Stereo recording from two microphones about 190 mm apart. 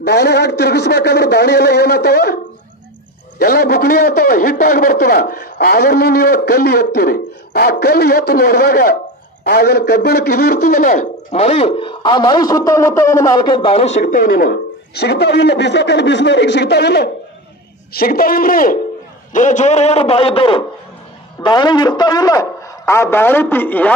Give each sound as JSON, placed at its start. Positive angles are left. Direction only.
{"t": 0.0, "sound": "a man's voice", "side_deg": 60}
{"t": 3.3, "sound": "a man's voice", "side_deg": 55}